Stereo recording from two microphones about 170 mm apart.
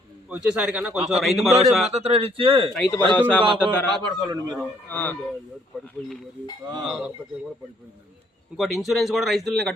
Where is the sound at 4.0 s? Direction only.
25° right (ahead or behind).